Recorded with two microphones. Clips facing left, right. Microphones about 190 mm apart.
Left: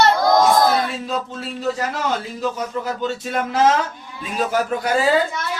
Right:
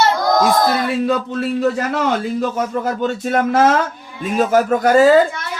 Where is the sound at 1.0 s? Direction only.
65° right (ahead or behind).